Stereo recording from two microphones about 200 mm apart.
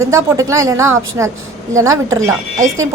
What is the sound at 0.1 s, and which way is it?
A woman's voice, 15° right (ahead or behind).